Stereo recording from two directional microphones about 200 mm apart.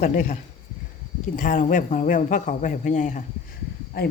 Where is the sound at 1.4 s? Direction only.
40° left (ahead or behind).